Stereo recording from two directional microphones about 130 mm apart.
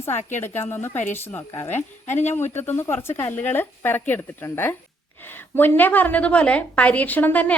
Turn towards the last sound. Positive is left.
turn(degrees=10)  # may be behind; listen again after turning